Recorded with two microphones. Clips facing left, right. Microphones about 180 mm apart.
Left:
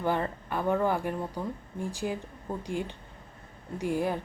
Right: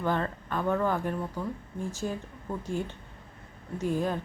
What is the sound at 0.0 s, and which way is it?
A woman's voice, 10° left (ahead or behind).